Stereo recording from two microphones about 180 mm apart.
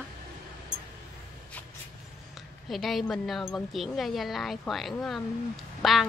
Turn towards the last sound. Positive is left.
turn(degrees=0)  # may be behind; listen again after turning